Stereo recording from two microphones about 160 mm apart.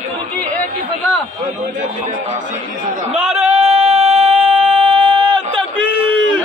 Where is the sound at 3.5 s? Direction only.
40° right (ahead or behind).